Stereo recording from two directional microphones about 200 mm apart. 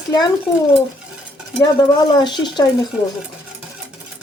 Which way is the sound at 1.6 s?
20° left (ahead or behind).